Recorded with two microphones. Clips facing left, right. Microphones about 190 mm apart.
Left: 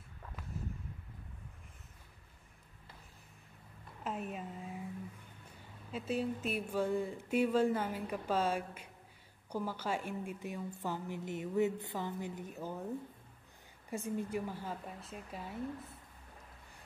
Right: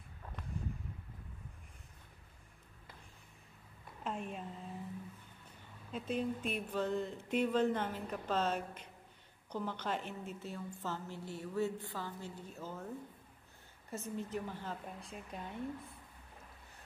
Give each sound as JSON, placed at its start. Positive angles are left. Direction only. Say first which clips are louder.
{"t": 4.0, "sound": "a sound", "louder": "left 1 dB", "side_deg": 5}
{"t": 5.9, "sound": "speech", "louder": "left 1 dB", "side_deg": 5}
{"t": 13.8, "sound": "speech", "louder": "left 4 dB", "side_deg": 10}